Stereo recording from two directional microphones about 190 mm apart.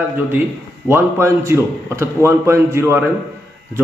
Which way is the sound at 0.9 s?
15° right (ahead or behind).